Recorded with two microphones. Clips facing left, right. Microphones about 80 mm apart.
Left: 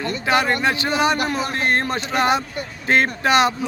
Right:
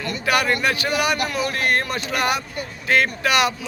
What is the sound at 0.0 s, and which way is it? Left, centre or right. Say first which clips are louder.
Speech: left 2 dB; left.